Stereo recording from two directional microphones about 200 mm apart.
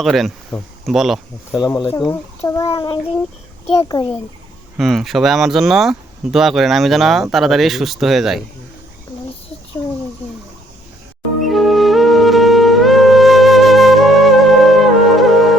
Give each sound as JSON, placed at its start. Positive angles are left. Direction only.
{"t": 0.0, "sound": "speech", "side_deg": 0}
{"t": 1.5, "sound": "speech", "side_deg": 20}
{"t": 4.8, "sound": "speech", "side_deg": 0}
{"t": 11.4, "sound": "music", "side_deg": 0}